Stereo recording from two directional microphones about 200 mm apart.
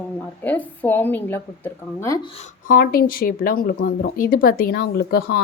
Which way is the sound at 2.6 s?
50° left (ahead or behind).